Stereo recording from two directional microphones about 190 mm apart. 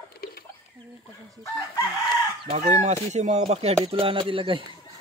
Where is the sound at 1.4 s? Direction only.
20° left (ahead or behind).